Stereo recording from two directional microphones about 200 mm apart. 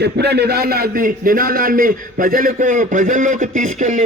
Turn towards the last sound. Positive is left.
turn(degrees=-35)  # may be behind; listen again after turning